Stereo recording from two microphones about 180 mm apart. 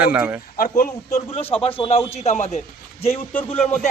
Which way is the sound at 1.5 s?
30° left (ahead or behind).